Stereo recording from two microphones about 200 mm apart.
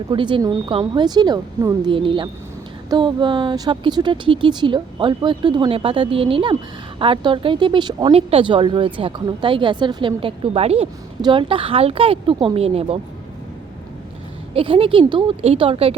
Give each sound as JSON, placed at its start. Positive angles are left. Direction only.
{"t": 0.1, "sound": "speech", "side_deg": -25}
{"t": 14.5, "sound": "speech", "side_deg": -25}